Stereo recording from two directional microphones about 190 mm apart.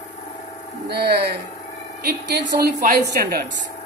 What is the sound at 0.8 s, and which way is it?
Speech, 60° right (ahead or behind).